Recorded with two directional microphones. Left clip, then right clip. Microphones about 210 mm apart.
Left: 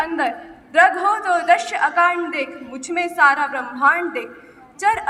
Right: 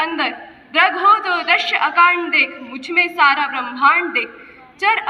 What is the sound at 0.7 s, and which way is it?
A woman's voice, 55° left (ahead or behind).